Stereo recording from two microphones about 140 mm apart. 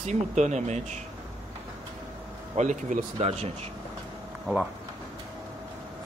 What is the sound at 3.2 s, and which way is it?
Speech, 50° right (ahead or behind).